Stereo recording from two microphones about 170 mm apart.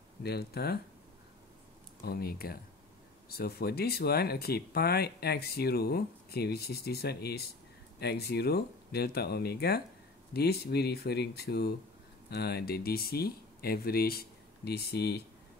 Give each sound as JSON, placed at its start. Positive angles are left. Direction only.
{"t": 0.2, "sound": "speech", "side_deg": 70}
{"t": 2.0, "sound": "speech", "side_deg": 65}